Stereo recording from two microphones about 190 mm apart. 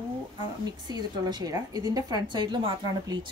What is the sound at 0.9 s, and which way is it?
A woman's voice, 20° right (ahead or behind).